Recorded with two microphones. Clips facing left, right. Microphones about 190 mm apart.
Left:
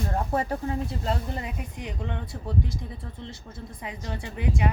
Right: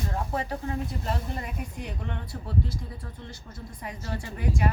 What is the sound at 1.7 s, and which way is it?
A woman's voice, 15° left (ahead or behind).